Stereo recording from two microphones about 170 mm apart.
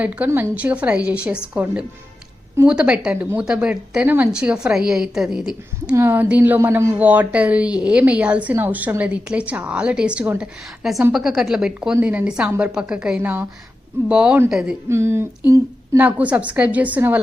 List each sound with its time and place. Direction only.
0.0 s a woman's voice: 10° right (ahead or behind)